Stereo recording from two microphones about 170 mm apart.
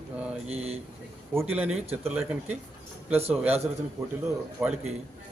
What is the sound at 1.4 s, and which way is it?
A man's voice, 10° right (ahead or behind).